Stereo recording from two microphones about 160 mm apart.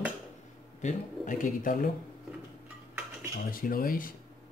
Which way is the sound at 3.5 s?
60° left (ahead or behind).